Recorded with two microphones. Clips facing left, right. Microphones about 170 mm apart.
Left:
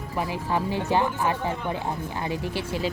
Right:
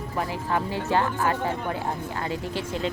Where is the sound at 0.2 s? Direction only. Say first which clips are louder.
Left 1 dB; 15° left (ahead or behind).